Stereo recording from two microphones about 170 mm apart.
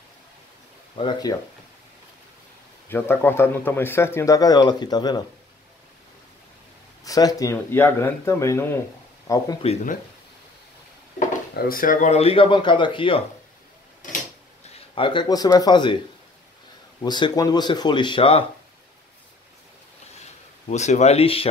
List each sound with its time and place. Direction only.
0.9 s speech: 30° left (ahead or behind)
2.9 s speech: 15° left (ahead or behind)
7.1 s speech: 20° left (ahead or behind)
11.5 s a man's voice: 55° left (ahead or behind); by 13.2 s 30° left (ahead or behind)
15.0 s speech: 30° left (ahead or behind)
17.0 s speech: 25° left (ahead or behind)
20.6 s a man's voice: 40° left (ahead or behind)